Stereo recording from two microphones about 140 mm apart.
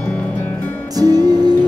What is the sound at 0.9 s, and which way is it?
Music, 30° right (ahead or behind).